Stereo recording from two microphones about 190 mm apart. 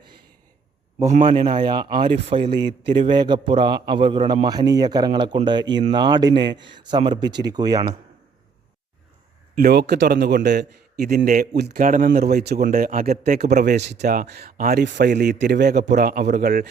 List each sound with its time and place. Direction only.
0.9 s a man's voice: 35° right (ahead or behind)
1.5 s speech: 25° right (ahead or behind)
9.6 s speech: 55° right (ahead or behind)
11.1 s speech: 50° right (ahead or behind)